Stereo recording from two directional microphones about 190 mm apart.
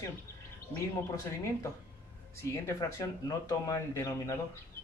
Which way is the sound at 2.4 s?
15° left (ahead or behind).